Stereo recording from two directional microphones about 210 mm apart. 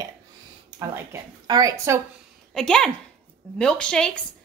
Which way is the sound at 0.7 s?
15° right (ahead or behind).